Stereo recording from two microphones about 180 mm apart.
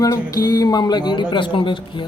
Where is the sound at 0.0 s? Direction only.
20° left (ahead or behind).